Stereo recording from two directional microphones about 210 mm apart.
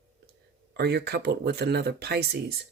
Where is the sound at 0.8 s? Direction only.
50° right (ahead or behind).